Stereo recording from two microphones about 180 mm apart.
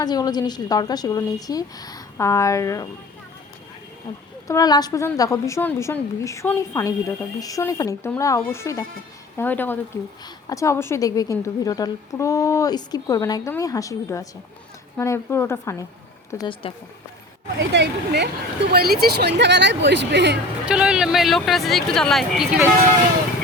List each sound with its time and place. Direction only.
0.0 s a woman's voice: 20° left (ahead or behind)
4.4 s a woman's voice: 20° left (ahead or behind)
17.6 s speech: 75° right (ahead or behind)
20.7 s speech: 5° right (ahead or behind)